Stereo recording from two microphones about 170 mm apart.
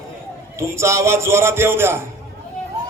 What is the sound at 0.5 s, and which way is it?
A man's voice, 15° right (ahead or behind).